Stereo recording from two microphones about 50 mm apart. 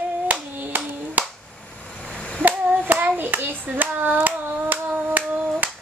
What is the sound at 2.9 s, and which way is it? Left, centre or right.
Hands, right.